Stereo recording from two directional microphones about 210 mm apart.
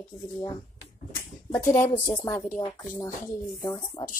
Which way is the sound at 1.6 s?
35° left (ahead or behind).